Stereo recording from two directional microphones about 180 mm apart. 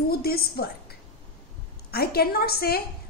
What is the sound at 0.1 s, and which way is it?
A woman's voice, 55° left (ahead or behind).